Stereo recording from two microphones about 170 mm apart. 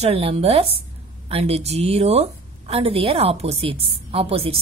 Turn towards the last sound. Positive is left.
turn(degrees=-35)  # may be behind; listen again after turning